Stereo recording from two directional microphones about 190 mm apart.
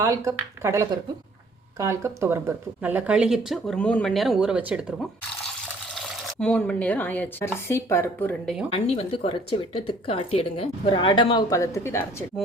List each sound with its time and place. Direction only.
0.0 s speech: 15° right (ahead or behind)
5.6 s water: centre (ahead or behind)
7.7 s speech: 15° left (ahead or behind)
8.7 s speech: 30° left (ahead or behind); by 12.2 s 15° left (ahead or behind)